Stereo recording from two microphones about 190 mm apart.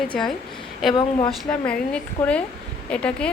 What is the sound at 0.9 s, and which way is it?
Speech, 25° left (ahead or behind).